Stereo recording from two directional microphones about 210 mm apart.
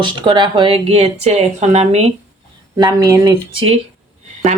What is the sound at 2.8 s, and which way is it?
Speech, 15° right (ahead or behind).